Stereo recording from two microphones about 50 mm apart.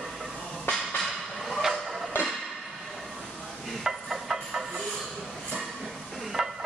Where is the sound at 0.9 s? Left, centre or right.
Centre.